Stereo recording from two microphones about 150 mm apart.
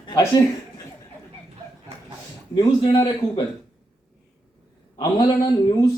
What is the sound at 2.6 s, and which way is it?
Speech, 30° left (ahead or behind).